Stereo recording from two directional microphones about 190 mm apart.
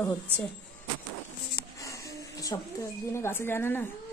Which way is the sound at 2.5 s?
20° left (ahead or behind).